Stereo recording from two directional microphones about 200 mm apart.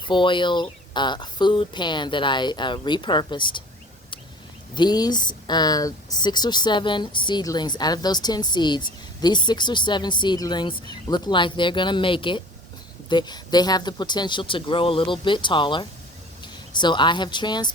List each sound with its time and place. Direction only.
0.1 s speech: 25° left (ahead or behind)
4.7 s speech: 20° left (ahead or behind)